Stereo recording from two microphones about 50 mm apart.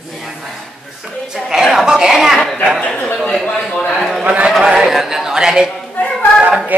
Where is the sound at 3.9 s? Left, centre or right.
Centre.